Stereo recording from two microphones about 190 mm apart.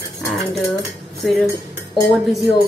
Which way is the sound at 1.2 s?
Centre (ahead or behind).